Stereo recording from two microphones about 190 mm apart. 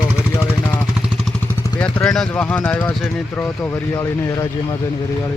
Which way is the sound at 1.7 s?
5° left (ahead or behind).